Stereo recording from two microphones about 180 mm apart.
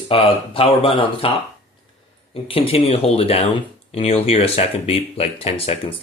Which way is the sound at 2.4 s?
30° left (ahead or behind).